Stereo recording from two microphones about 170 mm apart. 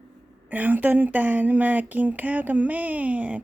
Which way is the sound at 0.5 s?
10° right (ahead or behind).